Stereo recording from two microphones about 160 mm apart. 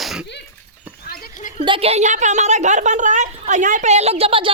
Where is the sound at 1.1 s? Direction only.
60° left (ahead or behind).